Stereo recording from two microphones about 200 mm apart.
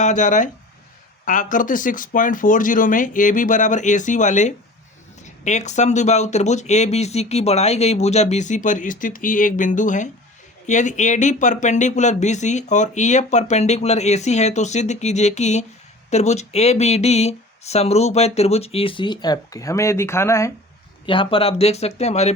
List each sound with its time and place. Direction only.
0.0 s speech: 35° left (ahead or behind); by 20.5 s 15° left (ahead or behind)
21.1 s speech: 25° left (ahead or behind)